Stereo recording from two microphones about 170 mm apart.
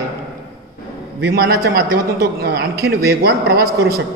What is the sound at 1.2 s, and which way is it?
A man's voice, 65° right (ahead or behind).